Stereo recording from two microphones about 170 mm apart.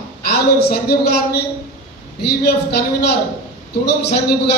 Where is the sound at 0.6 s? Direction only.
70° left (ahead or behind).